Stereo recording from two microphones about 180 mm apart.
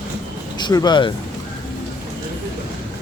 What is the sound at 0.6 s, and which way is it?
Speech, 20° left (ahead or behind).